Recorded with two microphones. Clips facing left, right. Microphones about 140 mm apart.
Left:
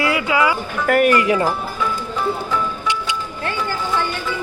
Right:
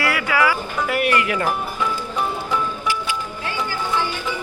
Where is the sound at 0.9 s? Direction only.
50° left (ahead or behind).